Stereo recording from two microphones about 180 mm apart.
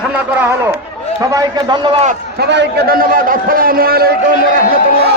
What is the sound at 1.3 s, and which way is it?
Speech, 25° right (ahead or behind).